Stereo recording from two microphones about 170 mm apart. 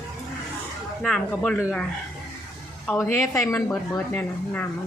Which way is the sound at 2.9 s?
15° left (ahead or behind).